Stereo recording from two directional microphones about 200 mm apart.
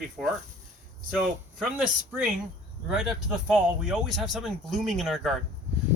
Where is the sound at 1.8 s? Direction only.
Centre (ahead or behind).